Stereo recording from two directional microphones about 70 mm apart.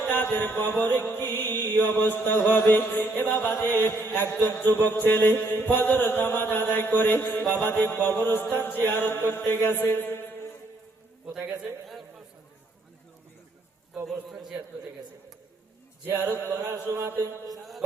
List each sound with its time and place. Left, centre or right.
0.0 s music: left
3.8 s mantra: left
4.4 s music: left
9.9 s mantra: left
11.9 s a sound: centre
14.1 s a man's voice: centre
16.0 s a sound: right
16.4 s mantra: right